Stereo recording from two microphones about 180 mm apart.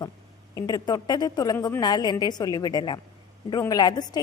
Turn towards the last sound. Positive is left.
turn(degrees=20)  # may be behind; listen again after turning